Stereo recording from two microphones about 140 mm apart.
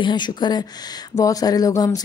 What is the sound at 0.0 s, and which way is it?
Speech, 30° left (ahead or behind).